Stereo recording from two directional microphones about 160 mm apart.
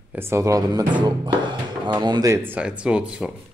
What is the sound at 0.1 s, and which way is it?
Speech, 15° right (ahead or behind).